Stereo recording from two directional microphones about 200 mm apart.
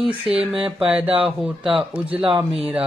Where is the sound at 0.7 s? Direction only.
5° right (ahead or behind).